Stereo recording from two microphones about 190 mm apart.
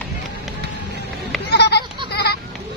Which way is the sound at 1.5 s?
60° left (ahead or behind).